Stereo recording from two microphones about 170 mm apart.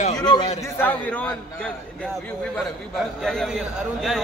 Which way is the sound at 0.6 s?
10° left (ahead or behind).